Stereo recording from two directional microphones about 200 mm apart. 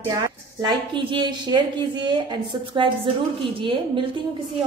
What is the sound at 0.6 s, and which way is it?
A woman's voice, 25° right (ahead or behind).